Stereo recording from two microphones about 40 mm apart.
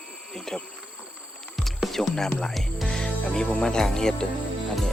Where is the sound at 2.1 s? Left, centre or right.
Centre.